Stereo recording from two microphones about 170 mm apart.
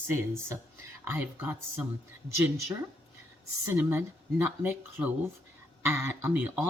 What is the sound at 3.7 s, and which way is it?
Speech, 15° right (ahead or behind).